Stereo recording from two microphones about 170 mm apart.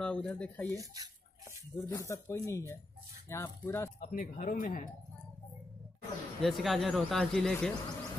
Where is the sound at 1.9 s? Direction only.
20° left (ahead or behind).